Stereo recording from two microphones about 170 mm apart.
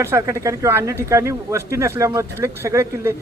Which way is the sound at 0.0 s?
15° right (ahead or behind).